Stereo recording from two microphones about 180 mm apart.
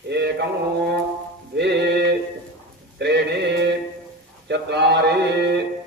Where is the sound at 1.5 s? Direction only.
70° right (ahead or behind).